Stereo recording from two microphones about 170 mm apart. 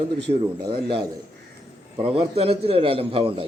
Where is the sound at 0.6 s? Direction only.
70° right (ahead or behind).